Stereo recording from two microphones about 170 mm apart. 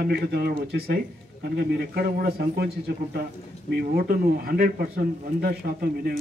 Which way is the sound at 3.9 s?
60° right (ahead or behind).